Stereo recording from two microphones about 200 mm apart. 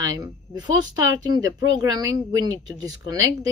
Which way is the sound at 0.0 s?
20° right (ahead or behind).